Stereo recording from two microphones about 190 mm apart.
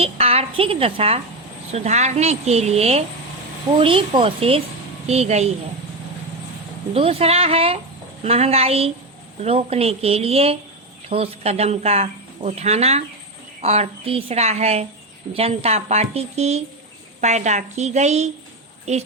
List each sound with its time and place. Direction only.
0.0 s a sound: 30° right (ahead or behind)
1.7 s speech: 35° right (ahead or behind)
6.9 s speech: 30° right (ahead or behind)